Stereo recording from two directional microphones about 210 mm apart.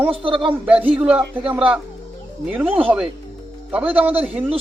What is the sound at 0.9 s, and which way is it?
Speech, 5° right (ahead or behind).